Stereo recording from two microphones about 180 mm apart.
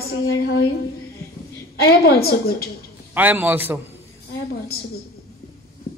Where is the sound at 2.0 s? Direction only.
60° left (ahead or behind).